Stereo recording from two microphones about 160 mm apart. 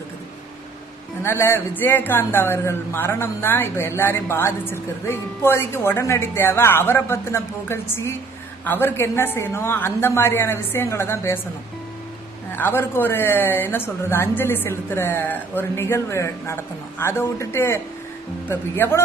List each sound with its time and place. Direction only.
1.2 s a man's voice: 15° left (ahead or behind)
12.5 s a man's voice: 15° left (ahead or behind)